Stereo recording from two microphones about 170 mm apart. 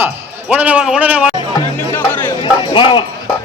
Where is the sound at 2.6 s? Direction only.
30° left (ahead or behind).